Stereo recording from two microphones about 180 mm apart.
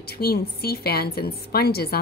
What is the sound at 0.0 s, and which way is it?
A woman's voice, 60° left (ahead or behind).